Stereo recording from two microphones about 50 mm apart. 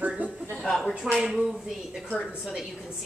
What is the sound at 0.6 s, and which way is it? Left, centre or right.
Speech, centre.